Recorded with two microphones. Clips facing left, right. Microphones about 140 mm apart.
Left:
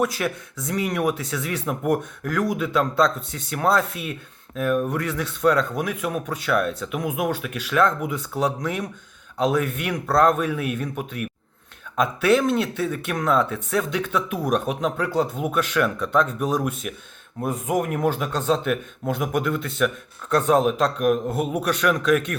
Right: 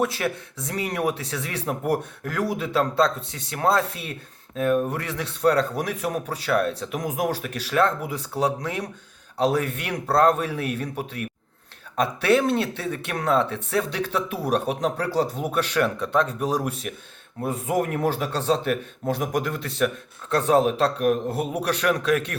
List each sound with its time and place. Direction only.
0.0 s speech: 30° right (ahead or behind)
18.0 s speech: 35° right (ahead or behind)